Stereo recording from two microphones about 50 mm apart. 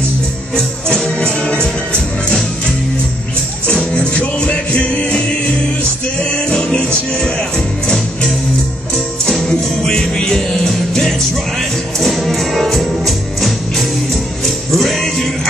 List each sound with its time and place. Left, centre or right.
0.9 s music: centre
3.7 s music: centre
4.0 s music: left
9.5 s music: centre